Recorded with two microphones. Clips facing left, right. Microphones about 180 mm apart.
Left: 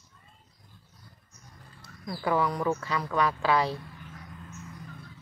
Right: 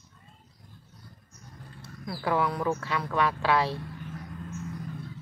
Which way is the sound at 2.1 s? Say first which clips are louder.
Even; centre (ahead or behind).